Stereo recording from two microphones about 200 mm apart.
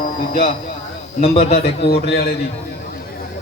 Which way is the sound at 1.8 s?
55° left (ahead or behind).